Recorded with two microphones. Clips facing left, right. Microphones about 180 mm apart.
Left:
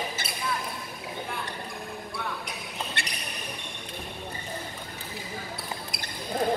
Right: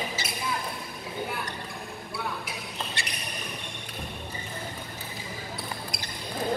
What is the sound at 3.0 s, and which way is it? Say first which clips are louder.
Basketball bounce: left 1 dB; 60° left (ahead or behind).